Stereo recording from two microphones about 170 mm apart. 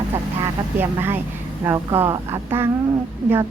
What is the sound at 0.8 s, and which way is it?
Speech, 10° right (ahead or behind).